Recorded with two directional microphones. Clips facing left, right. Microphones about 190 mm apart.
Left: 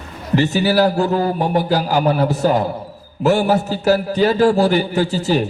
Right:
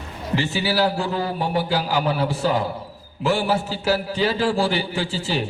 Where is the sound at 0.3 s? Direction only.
40° left (ahead or behind).